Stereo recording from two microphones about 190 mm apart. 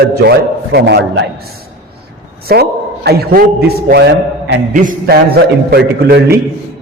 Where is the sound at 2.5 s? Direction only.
55° right (ahead or behind).